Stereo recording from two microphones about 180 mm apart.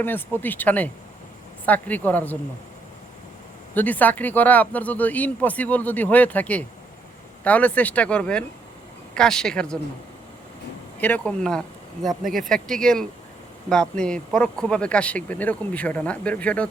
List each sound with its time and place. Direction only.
0.0 s speech: 10° left (ahead or behind)
3.8 s speech: 10° left (ahead or behind)
11.3 s speech: 5° left (ahead or behind)
12.2 s speech: 50° right (ahead or behind)
12.5 s speech: 5° left (ahead or behind)